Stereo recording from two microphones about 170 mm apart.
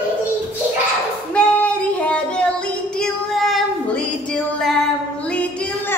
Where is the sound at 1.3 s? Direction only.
5° left (ahead or behind).